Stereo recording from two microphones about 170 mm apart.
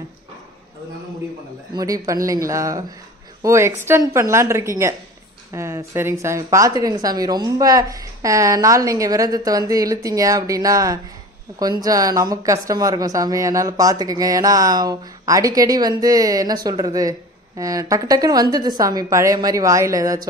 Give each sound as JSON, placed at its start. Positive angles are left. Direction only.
{"t": 1.8, "sound": "a woman's voice", "side_deg": -20}